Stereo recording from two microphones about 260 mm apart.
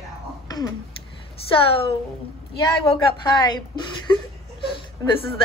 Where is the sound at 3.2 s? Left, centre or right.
Centre.